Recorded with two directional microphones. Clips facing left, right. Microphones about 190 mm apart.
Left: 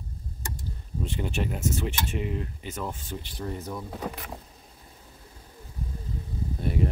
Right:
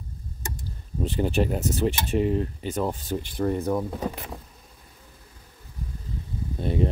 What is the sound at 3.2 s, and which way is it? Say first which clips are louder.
Speech: right 12 dB; 50° right (ahead or behind).